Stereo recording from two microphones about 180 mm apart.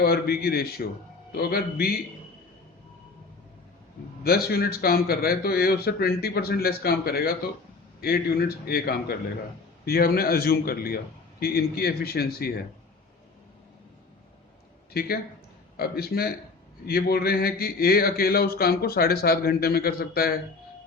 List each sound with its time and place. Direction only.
0.0 s a man's voice: 60° left (ahead or behind)
4.2 s a man's voice: 60° left (ahead or behind)
14.9 s a man's voice: 55° left (ahead or behind)